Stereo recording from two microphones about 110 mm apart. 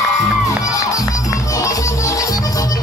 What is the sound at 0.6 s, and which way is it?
Music, 30° left (ahead or behind).